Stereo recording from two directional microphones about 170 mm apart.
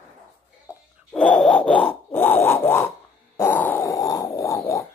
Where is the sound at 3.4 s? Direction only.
10° left (ahead or behind).